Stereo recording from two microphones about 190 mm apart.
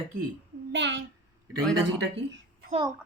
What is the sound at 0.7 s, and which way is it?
Speech, 75° right (ahead or behind).